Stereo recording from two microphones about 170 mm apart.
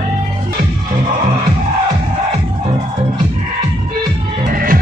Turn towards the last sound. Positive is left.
turn(degrees=-55)  # may be behind; listen again after turning